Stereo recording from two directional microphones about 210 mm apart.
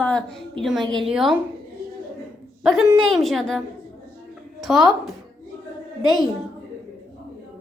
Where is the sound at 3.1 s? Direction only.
Centre (ahead or behind).